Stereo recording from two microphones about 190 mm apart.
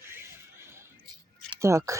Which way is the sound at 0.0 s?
15° right (ahead or behind).